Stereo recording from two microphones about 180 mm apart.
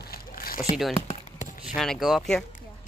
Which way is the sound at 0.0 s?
55° left (ahead or behind).